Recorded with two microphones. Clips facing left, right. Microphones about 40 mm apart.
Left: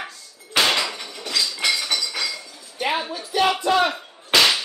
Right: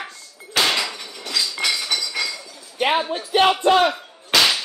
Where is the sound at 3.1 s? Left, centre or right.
Right.